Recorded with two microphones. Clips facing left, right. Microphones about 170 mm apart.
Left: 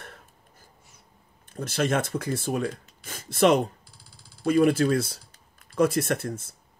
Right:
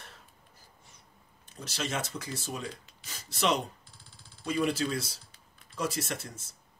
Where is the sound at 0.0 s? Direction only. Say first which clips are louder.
Left 6 dB; 55° left (ahead or behind).